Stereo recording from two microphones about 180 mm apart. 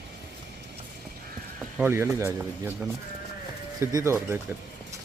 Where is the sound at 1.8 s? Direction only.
15° right (ahead or behind).